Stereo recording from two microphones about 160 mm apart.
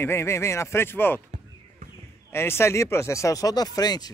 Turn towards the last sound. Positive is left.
turn(degrees=25)  # may be behind; listen again after turning